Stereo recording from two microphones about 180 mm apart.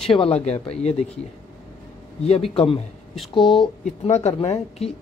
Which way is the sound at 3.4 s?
Centre (ahead or behind).